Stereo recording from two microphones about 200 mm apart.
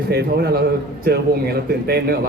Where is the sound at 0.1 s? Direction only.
55° right (ahead or behind).